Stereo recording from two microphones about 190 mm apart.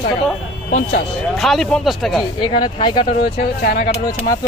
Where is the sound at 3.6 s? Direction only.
50° left (ahead or behind).